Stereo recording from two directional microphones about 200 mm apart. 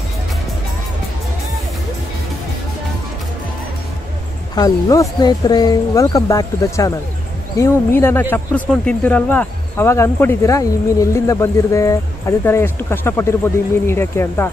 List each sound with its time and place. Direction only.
4.6 s speech: 20° left (ahead or behind)